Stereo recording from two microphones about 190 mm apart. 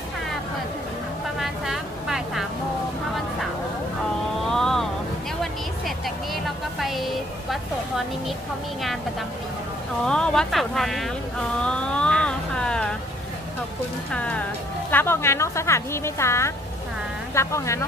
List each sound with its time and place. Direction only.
1.4 s vehicle: centre (ahead or behind)
4.5 s boat: centre (ahead or behind)
5.4 s music: centre (ahead or behind)
10.0 s a woman's voice: 5° left (ahead or behind)
11.6 s a sound: 5° left (ahead or behind)
14.1 s a woman's voice: 5° left (ahead or behind)